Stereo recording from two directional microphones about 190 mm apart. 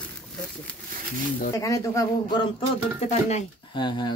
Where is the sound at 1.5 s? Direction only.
15° left (ahead or behind).